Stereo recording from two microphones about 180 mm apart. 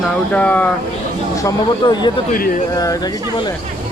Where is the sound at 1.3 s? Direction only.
20° left (ahead or behind).